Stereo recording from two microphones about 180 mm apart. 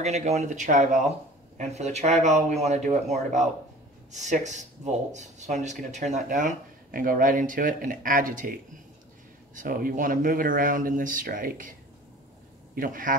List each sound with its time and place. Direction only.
0.0 s speech: 40° right (ahead or behind)
9.6 s speech: 50° right (ahead or behind)
12.7 s speech: 50° right (ahead or behind)